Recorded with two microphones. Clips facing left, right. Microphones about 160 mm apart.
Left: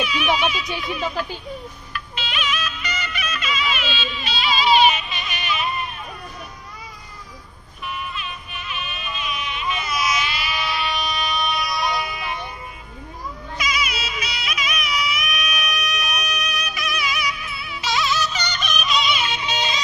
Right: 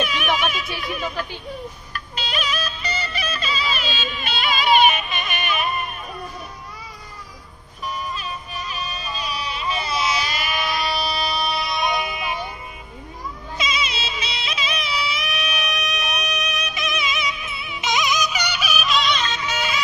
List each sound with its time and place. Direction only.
0.0 s music: 50° right (ahead or behind)
0.7 s speech: 50° right (ahead or behind)
2.0 s music: 40° right (ahead or behind)
7.8 s music: 40° right (ahead or behind); by 12.4 s 20° right (ahead or behind)
13.6 s music: 25° right (ahead or behind); by 19.4 s 10° left (ahead or behind)
19.4 s music: 25° left (ahead or behind)